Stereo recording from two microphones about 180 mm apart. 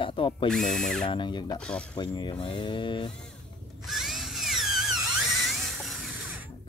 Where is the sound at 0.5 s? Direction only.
Centre (ahead or behind).